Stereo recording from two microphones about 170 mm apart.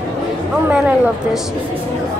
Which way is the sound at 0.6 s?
10° right (ahead or behind).